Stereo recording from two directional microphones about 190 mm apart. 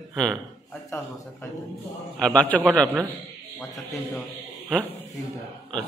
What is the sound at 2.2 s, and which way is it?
A man's voice, 5° left (ahead or behind).